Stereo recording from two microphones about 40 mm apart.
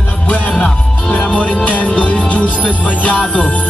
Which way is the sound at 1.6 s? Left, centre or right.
Left.